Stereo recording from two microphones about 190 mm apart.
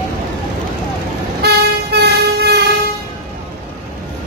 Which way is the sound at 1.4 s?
60° right (ahead or behind).